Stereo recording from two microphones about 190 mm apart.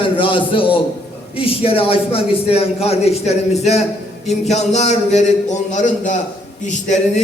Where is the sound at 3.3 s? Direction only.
35° left (ahead or behind).